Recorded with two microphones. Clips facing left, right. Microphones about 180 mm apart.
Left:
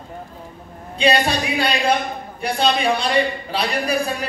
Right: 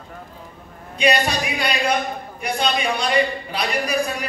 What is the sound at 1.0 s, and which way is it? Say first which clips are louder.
Speech: left 1 dB; 25° left (ahead or behind).